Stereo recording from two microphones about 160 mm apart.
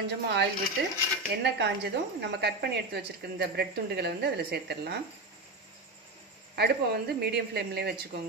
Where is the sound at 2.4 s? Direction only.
90° right.